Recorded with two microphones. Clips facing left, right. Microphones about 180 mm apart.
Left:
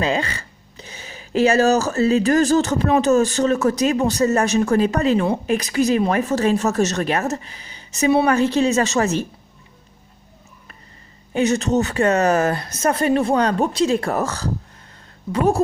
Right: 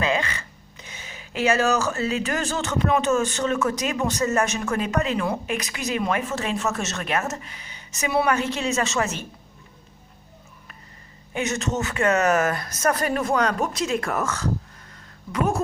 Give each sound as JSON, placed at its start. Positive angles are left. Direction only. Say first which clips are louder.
{"t": 0.0, "sound": "speech", "louder": "left 3 dB", "side_deg": 35}
{"t": 11.3, "sound": "speech", "louder": "left 8 dB", "side_deg": 35}